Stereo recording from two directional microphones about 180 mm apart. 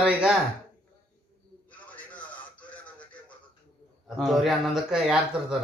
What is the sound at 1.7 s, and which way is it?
Radio, 10° left (ahead or behind).